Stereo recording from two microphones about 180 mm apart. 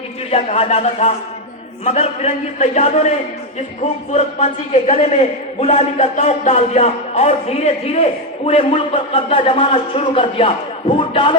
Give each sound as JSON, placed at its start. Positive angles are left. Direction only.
{"t": 0.3, "sound": "a man's voice", "side_deg": 35}